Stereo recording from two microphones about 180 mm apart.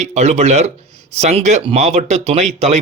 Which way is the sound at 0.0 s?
40° right (ahead or behind).